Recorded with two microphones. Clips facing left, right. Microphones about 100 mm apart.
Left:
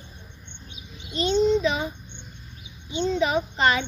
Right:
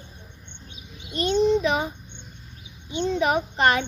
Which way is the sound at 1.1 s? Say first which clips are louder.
Even; 55° right (ahead or behind).